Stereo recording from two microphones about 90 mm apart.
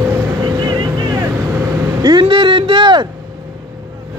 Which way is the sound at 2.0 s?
60° right (ahead or behind).